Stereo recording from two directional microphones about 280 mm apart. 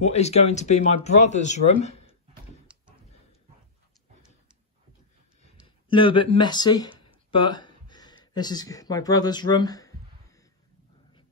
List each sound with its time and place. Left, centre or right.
0.0 s speech: left
2.7 s a sound: centre
5.9 s speech: centre